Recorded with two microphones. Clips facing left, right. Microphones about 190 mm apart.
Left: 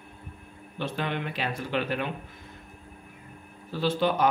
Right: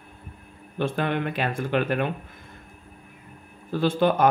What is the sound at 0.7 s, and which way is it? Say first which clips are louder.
Speech: right 6 dB; 50° right (ahead or behind).